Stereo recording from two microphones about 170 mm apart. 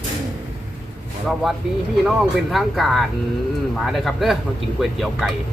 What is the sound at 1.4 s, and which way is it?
Speech, centre (ahead or behind).